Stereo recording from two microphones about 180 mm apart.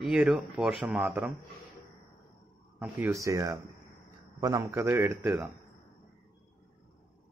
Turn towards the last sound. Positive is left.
turn(degrees=-15)  # may be behind; listen again after turning